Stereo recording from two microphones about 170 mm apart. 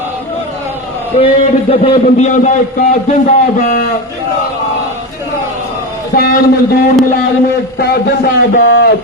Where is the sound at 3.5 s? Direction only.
55° left (ahead or behind).